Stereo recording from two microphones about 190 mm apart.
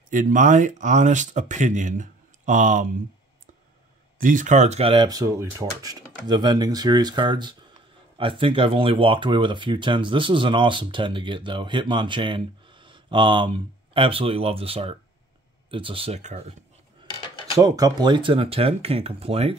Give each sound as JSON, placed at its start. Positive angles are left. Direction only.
{"t": 0.1, "sound": "speech", "side_deg": -40}
{"t": 4.2, "sound": "speech", "side_deg": -45}
{"t": 17.6, "sound": "speech", "side_deg": -20}